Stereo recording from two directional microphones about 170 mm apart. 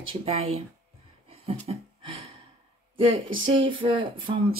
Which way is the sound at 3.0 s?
30° right (ahead or behind).